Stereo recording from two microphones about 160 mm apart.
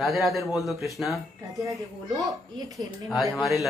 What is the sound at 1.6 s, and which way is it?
Speech, 20° right (ahead or behind).